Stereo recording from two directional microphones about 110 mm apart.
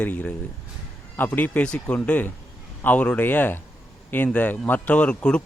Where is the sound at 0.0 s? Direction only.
15° left (ahead or behind).